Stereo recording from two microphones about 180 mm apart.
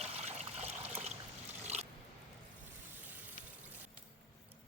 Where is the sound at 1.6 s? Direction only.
40° right (ahead or behind).